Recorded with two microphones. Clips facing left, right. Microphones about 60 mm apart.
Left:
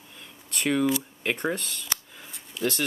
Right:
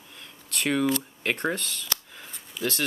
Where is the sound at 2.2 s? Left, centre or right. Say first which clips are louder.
Even; centre.